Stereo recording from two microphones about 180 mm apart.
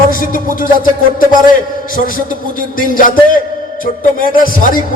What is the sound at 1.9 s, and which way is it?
A man's voice, 50° left (ahead or behind).